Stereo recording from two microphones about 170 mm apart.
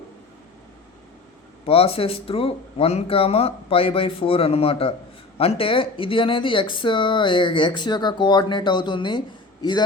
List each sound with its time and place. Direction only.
1.6 s speech: 35° left (ahead or behind)